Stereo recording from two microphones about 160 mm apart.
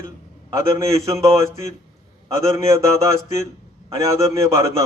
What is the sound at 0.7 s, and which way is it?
Speech, 20° right (ahead or behind).